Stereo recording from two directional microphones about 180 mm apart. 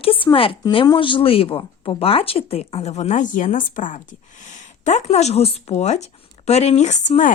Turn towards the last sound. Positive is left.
turn(degrees=45)  # may be behind; listen again after turning